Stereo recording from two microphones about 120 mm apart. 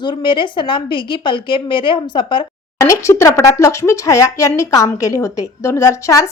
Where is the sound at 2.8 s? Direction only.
25° left (ahead or behind).